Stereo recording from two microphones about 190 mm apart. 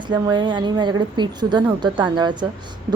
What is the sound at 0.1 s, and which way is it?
A woman's voice, 25° right (ahead or behind).